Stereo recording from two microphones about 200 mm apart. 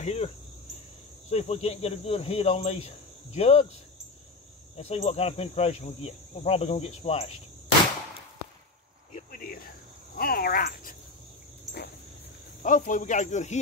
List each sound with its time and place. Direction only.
0.0 s cricket: 30° left (ahead or behind)
1.3 s cricket: 30° left (ahead or behind)
4.7 s cricket: 30° left (ahead or behind)
9.1 s cricket: 45° left (ahead or behind)
10.1 s speech: 50° left (ahead or behind)
12.6 s cricket: 40° left (ahead or behind)